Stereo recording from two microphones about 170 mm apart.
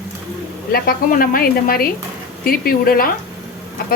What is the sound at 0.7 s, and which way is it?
A woman's voice, 60° left (ahead or behind).